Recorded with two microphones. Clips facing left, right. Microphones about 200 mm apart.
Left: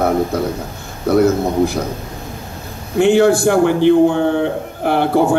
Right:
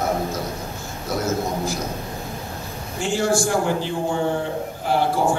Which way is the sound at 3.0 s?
60° left (ahead or behind).